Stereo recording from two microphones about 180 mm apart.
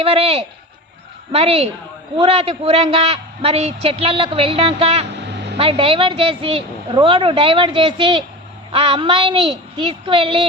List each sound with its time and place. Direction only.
0.0 s a man's voice: 35° right (ahead or behind)